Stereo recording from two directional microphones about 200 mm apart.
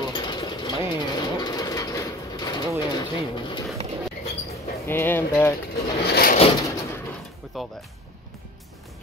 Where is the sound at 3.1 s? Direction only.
25° left (ahead or behind).